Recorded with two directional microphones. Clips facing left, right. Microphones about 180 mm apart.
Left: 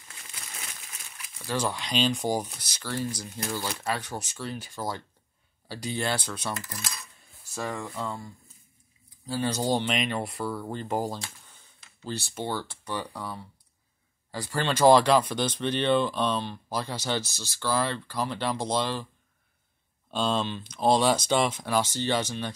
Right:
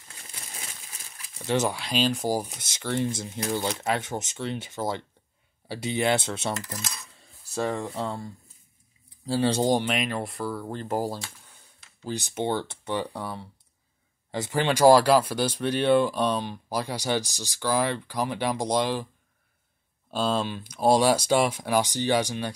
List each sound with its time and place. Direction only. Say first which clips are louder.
0.1 s crumpling: right 1 dB; 30° right (ahead or behind)
1.4 s speech: right 4 dB; 20° right (ahead or behind)
1.8 s speech: right 1 dB; 5° right (ahead or behind)
2.5 s speech: right 5 dB; 25° right (ahead or behind)
9.8 s speech: right 1 dB; centre (ahead or behind)
20.1 s speech: right 1 dB; 5° right (ahead or behind)